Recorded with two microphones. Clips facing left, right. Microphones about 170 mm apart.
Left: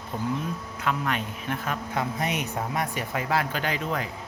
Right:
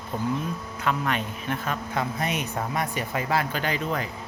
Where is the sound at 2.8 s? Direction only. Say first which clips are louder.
Right 1 dB; 5° left (ahead or behind).